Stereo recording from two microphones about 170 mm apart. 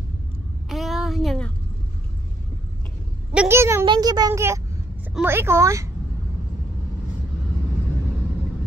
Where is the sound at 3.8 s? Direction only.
25° right (ahead or behind).